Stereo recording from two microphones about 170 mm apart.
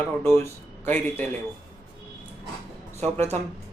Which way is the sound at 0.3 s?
15° left (ahead or behind).